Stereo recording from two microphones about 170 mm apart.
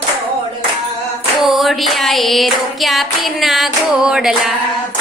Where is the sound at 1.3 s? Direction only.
Centre (ahead or behind).